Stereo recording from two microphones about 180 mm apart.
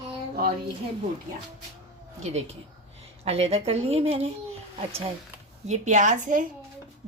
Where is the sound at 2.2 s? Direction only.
40° right (ahead or behind).